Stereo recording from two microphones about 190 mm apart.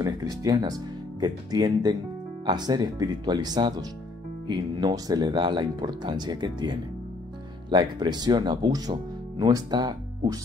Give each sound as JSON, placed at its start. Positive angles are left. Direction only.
{"t": 0.0, "sound": "speech", "side_deg": -20}